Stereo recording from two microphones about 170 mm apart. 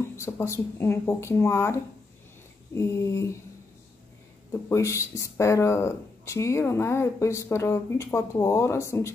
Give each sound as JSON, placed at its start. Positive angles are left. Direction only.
{"t": 0.0, "sound": "speech", "side_deg": 15}
{"t": 4.5, "sound": "speech", "side_deg": 15}